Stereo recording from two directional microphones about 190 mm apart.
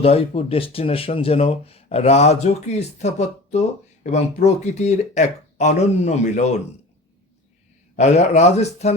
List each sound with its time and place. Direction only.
0.0 s speech: 30° left (ahead or behind)
7.9 s speech: 35° left (ahead or behind)